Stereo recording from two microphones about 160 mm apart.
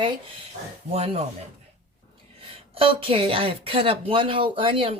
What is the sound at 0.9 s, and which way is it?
Speech, 40° right (ahead or behind).